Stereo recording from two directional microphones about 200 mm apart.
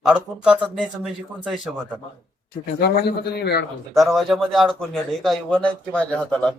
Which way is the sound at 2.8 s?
55° left (ahead or behind).